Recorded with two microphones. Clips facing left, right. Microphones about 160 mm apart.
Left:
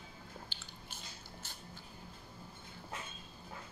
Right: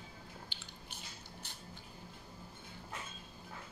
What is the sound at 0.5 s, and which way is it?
Biting, 45° left (ahead or behind).